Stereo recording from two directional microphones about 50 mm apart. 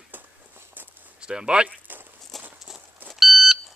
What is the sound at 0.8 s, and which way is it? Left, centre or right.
Walk, right.